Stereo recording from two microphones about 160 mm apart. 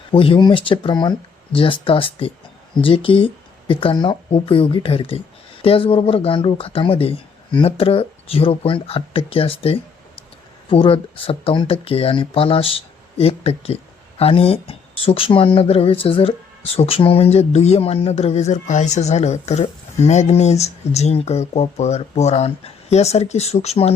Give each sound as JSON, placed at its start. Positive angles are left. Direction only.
{"t": 0.1, "sound": "speech", "side_deg": 35}